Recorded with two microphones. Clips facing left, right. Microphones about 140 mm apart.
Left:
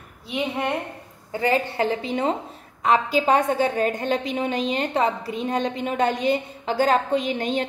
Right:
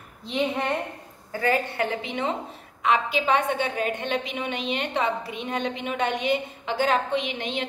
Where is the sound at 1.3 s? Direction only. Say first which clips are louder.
Left 2 dB; 25° left (ahead or behind).